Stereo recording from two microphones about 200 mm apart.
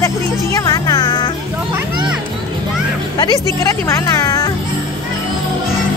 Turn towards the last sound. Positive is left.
turn(degrees=15)  # may be behind; listen again after turning